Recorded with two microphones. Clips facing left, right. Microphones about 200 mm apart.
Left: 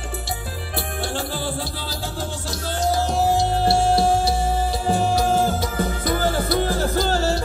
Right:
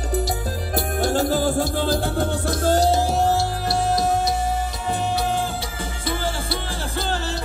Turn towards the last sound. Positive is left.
turn(degrees=40)  # may be behind; listen again after turning